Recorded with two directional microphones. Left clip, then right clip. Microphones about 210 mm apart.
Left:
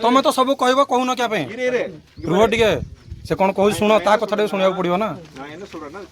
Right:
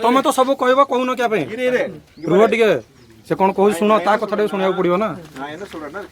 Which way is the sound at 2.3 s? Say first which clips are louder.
Right 2 dB; 35° left (ahead or behind).